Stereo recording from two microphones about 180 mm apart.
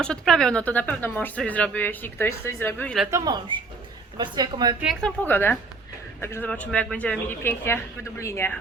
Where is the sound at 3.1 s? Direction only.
20° right (ahead or behind).